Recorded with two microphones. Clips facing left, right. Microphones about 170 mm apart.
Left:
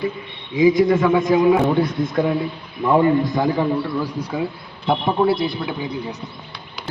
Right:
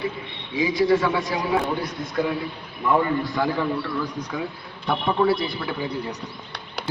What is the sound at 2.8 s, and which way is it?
A man's voice, 30° left (ahead or behind).